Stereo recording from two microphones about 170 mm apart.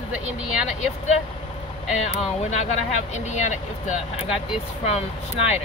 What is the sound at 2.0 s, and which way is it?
Speech, 40° left (ahead or behind).